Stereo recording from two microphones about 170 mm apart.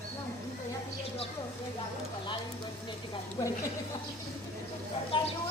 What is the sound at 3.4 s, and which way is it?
Speech, 20° left (ahead or behind).